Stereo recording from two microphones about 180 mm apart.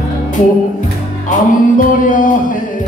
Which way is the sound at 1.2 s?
45° left (ahead or behind).